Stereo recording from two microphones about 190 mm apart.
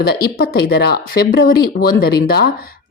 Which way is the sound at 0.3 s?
55° left (ahead or behind).